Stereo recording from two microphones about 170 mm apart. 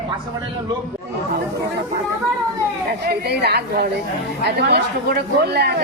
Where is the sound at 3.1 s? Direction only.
70° right (ahead or behind).